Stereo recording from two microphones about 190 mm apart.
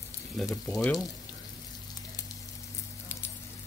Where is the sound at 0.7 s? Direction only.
15° left (ahead or behind).